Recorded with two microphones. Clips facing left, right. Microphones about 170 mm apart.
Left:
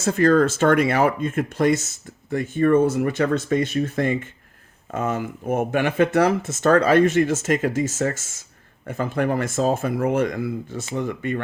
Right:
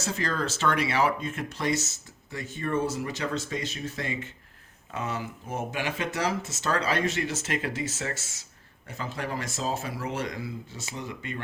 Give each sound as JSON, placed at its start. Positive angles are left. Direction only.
{"t": 0.0, "sound": "speech", "side_deg": 55}